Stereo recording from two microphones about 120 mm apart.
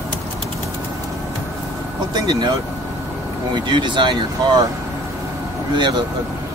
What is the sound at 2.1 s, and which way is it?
Speech, 35° right (ahead or behind).